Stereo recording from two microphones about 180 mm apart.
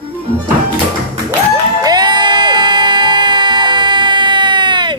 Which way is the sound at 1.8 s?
25° right (ahead or behind).